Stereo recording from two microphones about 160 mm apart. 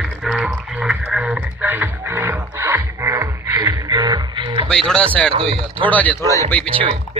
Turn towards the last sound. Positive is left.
turn(degrees=-35)  # may be behind; listen again after turning